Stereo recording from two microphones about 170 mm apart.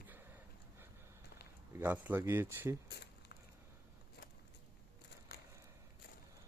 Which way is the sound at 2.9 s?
80° left.